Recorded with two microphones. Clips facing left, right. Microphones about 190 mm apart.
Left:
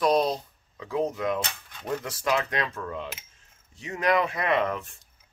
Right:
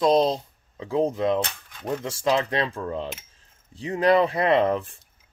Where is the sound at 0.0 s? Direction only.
25° right (ahead or behind).